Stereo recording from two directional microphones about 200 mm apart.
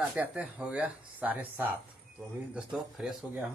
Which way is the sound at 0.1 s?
5° right (ahead or behind).